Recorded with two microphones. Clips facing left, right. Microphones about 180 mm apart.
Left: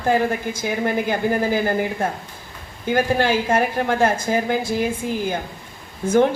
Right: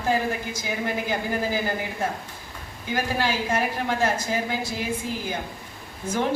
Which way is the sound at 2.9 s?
55° left (ahead or behind).